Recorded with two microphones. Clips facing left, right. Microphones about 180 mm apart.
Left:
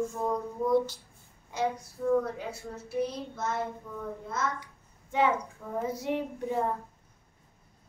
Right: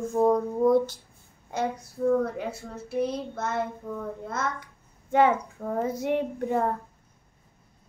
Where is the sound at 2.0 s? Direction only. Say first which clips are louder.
Right 4 dB; 40° right (ahead or behind).